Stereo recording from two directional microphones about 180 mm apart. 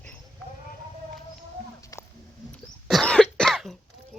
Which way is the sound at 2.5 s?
5° left (ahead or behind).